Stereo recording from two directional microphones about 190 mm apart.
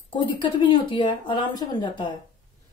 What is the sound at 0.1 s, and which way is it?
Speech, 25° left (ahead or behind).